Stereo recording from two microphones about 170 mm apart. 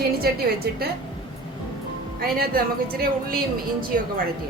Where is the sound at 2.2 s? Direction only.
60° right (ahead or behind).